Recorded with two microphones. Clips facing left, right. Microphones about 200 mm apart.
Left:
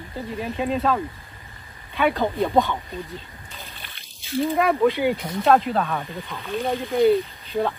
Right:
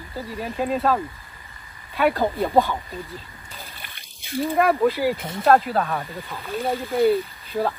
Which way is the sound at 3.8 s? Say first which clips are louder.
Even; 50° right (ahead or behind).